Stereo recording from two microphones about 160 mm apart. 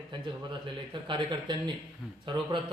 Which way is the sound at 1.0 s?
30° right (ahead or behind).